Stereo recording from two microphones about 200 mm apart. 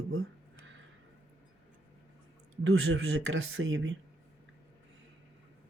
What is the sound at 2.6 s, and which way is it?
Speech, 90° right.